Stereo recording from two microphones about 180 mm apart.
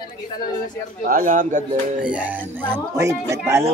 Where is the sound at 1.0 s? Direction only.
50° right (ahead or behind).